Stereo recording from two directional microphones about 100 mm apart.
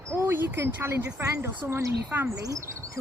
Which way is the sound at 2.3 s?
35° right (ahead or behind).